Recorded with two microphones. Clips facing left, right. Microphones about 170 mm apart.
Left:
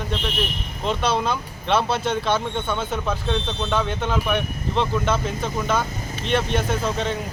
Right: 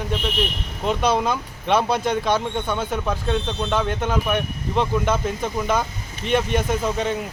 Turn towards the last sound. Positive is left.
turn(degrees=-10)  # may be behind; listen again after turning